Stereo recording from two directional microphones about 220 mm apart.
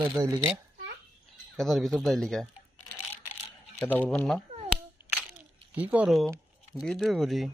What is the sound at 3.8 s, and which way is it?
Speech, 5° left (ahead or behind).